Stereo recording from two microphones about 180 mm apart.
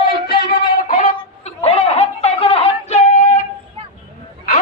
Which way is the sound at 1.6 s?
35° left (ahead or behind).